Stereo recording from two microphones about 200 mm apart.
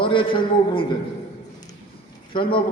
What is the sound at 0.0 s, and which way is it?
Speech, 25° left (ahead or behind).